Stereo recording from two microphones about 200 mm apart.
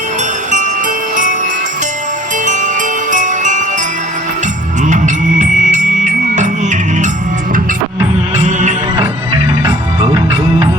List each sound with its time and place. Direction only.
1.1 s music: 40° right (ahead or behind)
2.4 s music: 40° right (ahead or behind)
4.8 s music: 40° right (ahead or behind)
8.4 s music: 40° right (ahead or behind)